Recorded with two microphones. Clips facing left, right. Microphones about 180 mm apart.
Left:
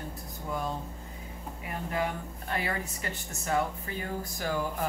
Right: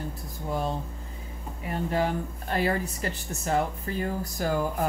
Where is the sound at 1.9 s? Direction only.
35° right (ahead or behind).